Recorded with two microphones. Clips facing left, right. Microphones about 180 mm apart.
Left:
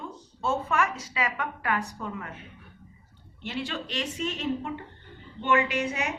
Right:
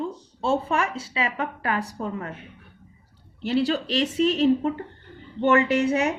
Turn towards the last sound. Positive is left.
turn(degrees=-40)  # may be behind; listen again after turning